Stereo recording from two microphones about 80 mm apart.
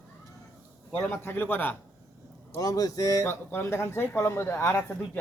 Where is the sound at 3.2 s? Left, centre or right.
Left.